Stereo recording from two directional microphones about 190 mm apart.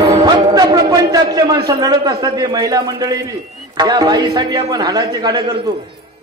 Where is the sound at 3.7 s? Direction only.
20° right (ahead or behind).